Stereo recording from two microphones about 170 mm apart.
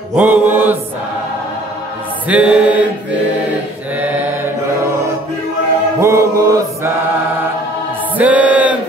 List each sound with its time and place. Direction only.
0.1 s mantra: 10° right (ahead or behind)
2.2 s mantra: 5° right (ahead or behind)
5.9 s mantra: 15° right (ahead or behind)
8.2 s music: 10° right (ahead or behind)